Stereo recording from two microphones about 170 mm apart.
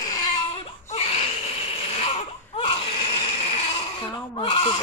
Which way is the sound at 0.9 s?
35° left (ahead or behind).